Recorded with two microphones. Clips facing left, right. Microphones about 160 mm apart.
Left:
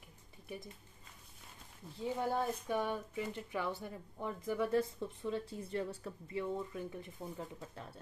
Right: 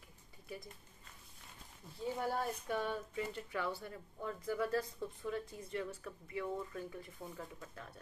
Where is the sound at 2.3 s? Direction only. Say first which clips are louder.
Left 3 dB; 20° left (ahead or behind).